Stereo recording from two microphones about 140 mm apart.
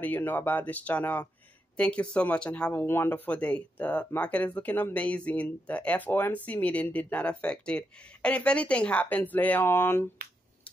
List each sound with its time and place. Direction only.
0.0 s speech: 15° left (ahead or behind)